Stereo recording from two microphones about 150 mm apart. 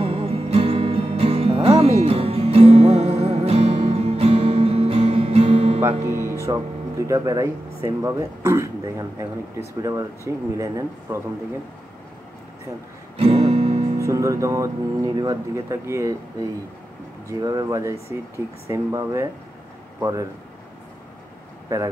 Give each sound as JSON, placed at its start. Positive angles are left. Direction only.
{"t": 0.0, "sound": "music", "side_deg": -40}
{"t": 5.8, "sound": "music", "side_deg": -15}
{"t": 6.4, "sound": "speech", "side_deg": -20}
{"t": 13.2, "sound": "music", "side_deg": -40}
{"t": 13.9, "sound": "speech", "side_deg": -20}
{"t": 17.3, "sound": "speech", "side_deg": -25}